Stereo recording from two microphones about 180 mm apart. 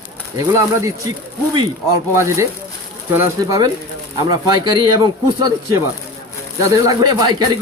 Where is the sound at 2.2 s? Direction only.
15° right (ahead or behind).